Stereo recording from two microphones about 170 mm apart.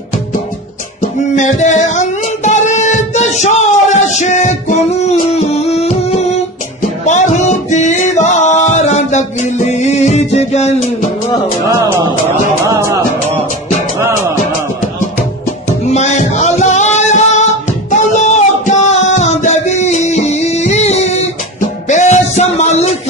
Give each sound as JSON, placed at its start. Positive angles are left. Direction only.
{"t": 1.0, "sound": "a sound", "side_deg": 45}
{"t": 7.1, "sound": "music", "side_deg": 45}
{"t": 12.6, "sound": "music", "side_deg": -20}
{"t": 15.9, "sound": "female singing", "side_deg": 45}
{"t": 17.9, "sound": "music", "side_deg": 45}